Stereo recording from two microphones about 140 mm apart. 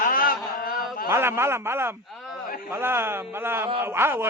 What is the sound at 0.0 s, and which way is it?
Mantra, 90° left.